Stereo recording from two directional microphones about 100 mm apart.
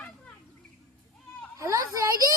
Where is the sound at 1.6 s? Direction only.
35° right (ahead or behind).